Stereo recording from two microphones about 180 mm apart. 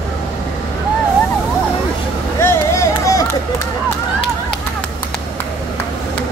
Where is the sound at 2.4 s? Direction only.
15° left (ahead or behind).